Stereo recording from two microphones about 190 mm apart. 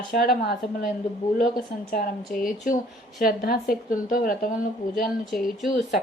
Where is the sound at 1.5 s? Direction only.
50° left (ahead or behind).